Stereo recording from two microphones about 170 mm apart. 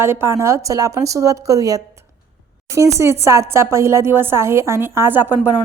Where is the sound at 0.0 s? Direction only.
15° right (ahead or behind).